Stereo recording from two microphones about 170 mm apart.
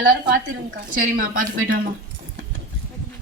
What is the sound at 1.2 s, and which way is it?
Speech, 55° right (ahead or behind).